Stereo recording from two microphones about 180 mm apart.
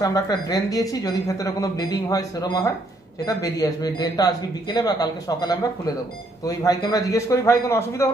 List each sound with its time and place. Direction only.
0.0 s speech: 20° left (ahead or behind)